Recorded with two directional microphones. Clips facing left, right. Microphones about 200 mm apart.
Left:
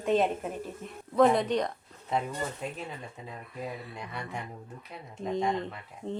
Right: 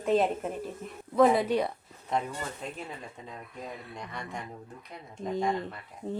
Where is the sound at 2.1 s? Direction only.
5° left (ahead or behind).